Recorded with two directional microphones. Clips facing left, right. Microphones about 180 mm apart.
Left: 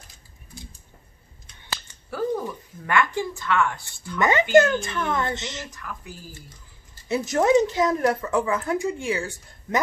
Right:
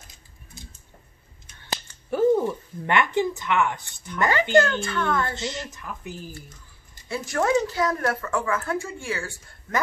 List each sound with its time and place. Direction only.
2.0 s a woman's voice: 20° right (ahead or behind)
4.2 s a woman's voice: 20° left (ahead or behind)
5.7 s speech: 20° right (ahead or behind)
7.1 s a woman's voice: 20° left (ahead or behind)